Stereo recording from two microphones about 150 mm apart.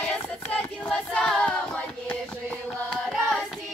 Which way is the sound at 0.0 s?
10° left (ahead or behind).